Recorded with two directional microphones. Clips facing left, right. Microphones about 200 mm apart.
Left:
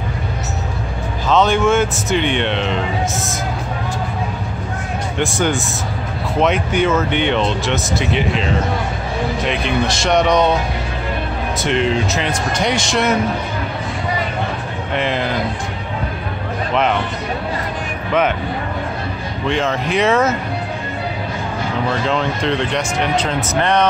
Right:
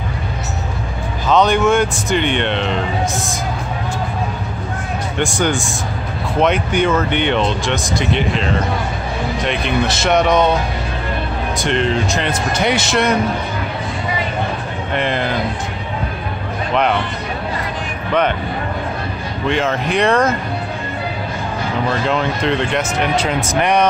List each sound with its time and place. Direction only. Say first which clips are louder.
1.2 s speech: right 1 dB; centre (ahead or behind)
5.2 s speech: even; centre (ahead or behind)
11.5 s speech: even; 5° left (ahead or behind)
15.0 s speech: even; centre (ahead or behind)
19.4 s speech: right 1 dB; centre (ahead or behind)
22.0 s speech: right 1 dB; 5° right (ahead or behind)